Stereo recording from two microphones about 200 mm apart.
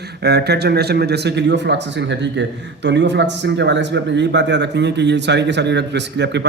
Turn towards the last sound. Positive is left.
turn(degrees=-60)  # may be behind; listen again after turning